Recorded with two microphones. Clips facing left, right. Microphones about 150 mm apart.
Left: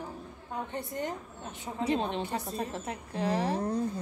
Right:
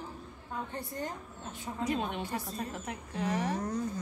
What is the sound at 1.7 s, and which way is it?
A woman's voice, 30° left (ahead or behind).